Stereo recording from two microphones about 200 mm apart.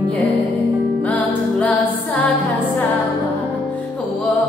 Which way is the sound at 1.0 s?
5° left (ahead or behind).